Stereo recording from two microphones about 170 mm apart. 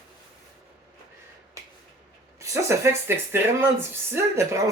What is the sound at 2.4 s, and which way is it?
Speech, 20° right (ahead or behind).